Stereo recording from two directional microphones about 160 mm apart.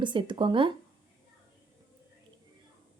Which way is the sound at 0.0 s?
30° right (ahead or behind).